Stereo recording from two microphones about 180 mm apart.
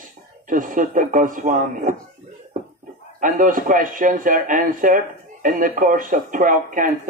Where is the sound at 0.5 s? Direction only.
45° right (ahead or behind).